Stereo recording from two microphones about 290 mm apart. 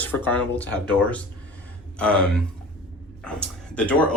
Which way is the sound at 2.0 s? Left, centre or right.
Centre.